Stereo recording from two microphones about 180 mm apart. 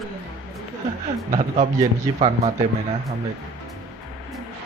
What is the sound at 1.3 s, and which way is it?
Speech, 45° right (ahead or behind).